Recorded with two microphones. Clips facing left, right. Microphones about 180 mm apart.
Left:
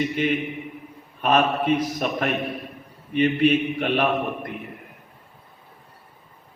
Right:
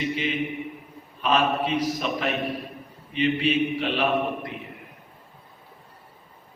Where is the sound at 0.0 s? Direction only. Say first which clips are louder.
Left 3 dB; 50° left (ahead or behind).